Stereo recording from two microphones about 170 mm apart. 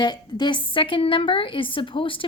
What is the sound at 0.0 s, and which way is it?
A woman's voice, 25° left (ahead or behind).